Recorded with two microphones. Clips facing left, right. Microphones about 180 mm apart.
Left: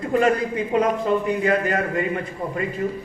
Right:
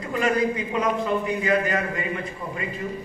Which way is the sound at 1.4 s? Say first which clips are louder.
Left 2 dB; 50° left (ahead or behind).